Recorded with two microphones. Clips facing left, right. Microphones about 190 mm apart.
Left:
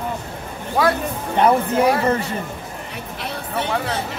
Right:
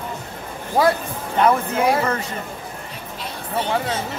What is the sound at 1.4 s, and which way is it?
Speech, 30° left (ahead or behind).